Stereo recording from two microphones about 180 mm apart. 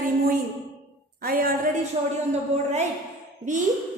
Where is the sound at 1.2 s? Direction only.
55° right (ahead or behind).